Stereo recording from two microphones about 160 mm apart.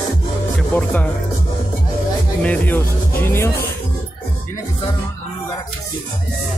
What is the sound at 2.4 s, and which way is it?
Speech, 10° left (ahead or behind).